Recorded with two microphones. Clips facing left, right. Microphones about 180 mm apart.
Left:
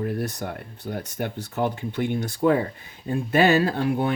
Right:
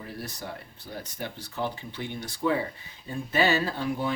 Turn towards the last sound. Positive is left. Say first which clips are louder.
# left 6 dB
turn(degrees=60)  # may be behind; listen again after turning